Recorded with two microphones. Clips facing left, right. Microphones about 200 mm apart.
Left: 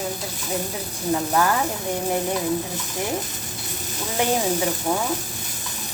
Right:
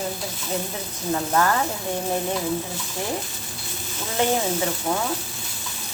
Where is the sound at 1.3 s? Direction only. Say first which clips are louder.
Right 1 dB; 10° left (ahead or behind).